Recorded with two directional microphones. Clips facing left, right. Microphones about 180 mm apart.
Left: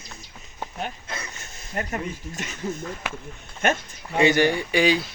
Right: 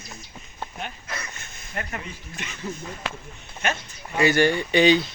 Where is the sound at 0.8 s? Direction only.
40° left (ahead or behind).